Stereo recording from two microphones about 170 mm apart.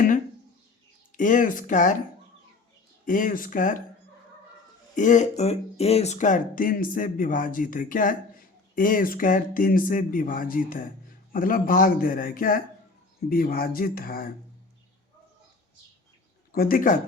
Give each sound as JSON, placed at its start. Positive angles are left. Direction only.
{"t": 1.1, "sound": "speech", "side_deg": 50}
{"t": 3.1, "sound": "speech", "side_deg": 50}
{"t": 4.9, "sound": "speech", "side_deg": 45}
{"t": 16.5, "sound": "speech", "side_deg": 60}